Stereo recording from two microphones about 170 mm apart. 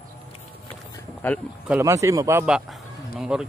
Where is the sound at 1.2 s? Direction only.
15° left (ahead or behind).